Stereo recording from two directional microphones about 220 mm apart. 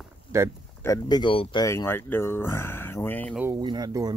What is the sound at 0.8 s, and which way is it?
Speech, 15° left (ahead or behind).